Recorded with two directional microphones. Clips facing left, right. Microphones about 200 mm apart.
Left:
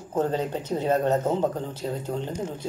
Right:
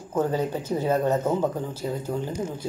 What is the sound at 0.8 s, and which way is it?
Speech, 25° left (ahead or behind).